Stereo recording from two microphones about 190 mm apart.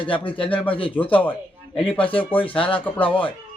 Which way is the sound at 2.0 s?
30° left (ahead or behind).